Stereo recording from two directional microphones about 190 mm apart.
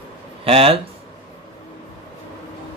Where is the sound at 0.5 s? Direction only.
30° right (ahead or behind).